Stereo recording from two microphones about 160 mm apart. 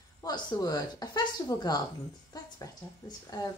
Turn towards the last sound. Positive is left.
turn(degrees=25)  # may be behind; listen again after turning